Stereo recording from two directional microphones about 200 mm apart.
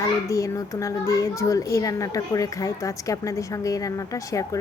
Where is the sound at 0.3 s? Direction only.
15° left (ahead or behind).